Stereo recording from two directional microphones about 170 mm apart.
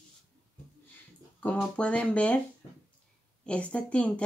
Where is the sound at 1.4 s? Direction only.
5° left (ahead or behind).